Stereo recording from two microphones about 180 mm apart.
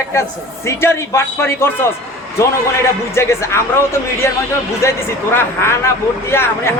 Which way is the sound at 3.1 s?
15° left (ahead or behind).